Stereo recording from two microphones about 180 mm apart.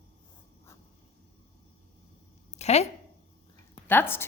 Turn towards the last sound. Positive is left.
turn(degrees=10)  # may be behind; listen again after turning